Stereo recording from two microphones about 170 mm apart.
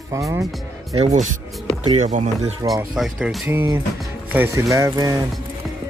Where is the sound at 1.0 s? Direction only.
40° right (ahead or behind).